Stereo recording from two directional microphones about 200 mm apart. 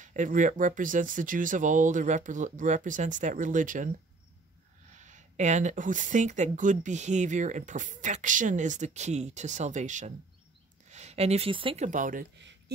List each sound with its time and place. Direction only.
0.0 s speech: 40° right (ahead or behind)
4.9 s speech: 40° right (ahead or behind)
12.4 s a sound: 60° right (ahead or behind)